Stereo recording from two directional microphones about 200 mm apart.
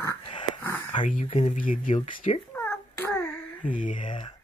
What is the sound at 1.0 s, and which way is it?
Speech, 35° left (ahead or behind).